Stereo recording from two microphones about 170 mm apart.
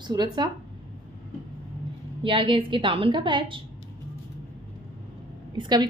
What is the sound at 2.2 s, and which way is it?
A woman's voice, 30° right (ahead or behind).